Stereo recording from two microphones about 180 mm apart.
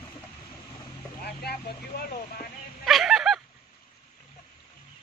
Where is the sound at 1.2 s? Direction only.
60° left (ahead or behind).